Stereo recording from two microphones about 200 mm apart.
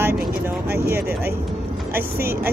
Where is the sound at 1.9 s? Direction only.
10° right (ahead or behind).